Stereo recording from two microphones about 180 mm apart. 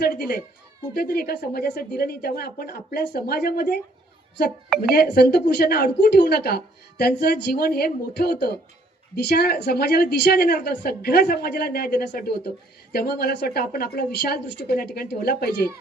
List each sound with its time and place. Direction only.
0.9 s a woman's voice: 60° left (ahead or behind)
4.8 s a woman's voice: 60° left (ahead or behind)